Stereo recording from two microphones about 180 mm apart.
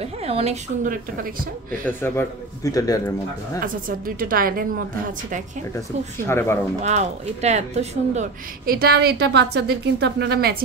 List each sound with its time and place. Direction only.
0.0 s speech: 35° right (ahead or behind)
1.9 s a man's voice: 10° left (ahead or behind)
4.2 s a woman's voice: 50° right (ahead or behind)
6.2 s a man's voice: 15° left (ahead or behind)
6.8 s speech: 40° right (ahead or behind)
8.6 s a woman's voice: 60° right (ahead or behind)